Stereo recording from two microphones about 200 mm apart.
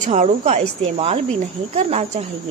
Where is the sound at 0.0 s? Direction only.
35° right (ahead or behind).